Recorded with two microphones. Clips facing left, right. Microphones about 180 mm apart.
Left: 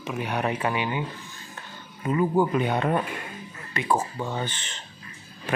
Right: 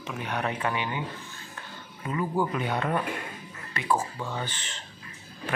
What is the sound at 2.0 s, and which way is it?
Speech, 25° left (ahead or behind).